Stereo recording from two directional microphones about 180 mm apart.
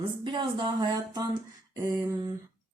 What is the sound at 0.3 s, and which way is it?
Speech, 25° right (ahead or behind).